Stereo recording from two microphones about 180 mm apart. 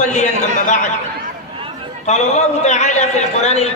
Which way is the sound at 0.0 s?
40° left (ahead or behind).